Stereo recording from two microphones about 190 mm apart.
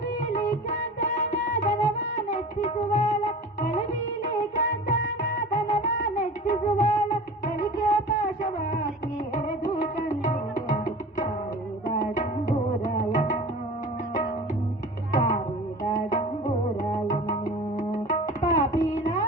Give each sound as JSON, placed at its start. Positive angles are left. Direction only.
{"t": 0.2, "sound": "music", "side_deg": 40}
{"t": 5.0, "sound": "music of bollywood", "side_deg": 45}
{"t": 5.6, "sound": "music", "side_deg": 45}
{"t": 10.0, "sound": "music", "side_deg": 40}
{"t": 11.9, "sound": "tabla", "side_deg": 40}
{"t": 15.1, "sound": "music", "side_deg": 40}